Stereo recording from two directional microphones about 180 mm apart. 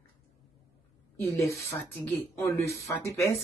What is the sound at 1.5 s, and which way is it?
Speech, 5° left (ahead or behind).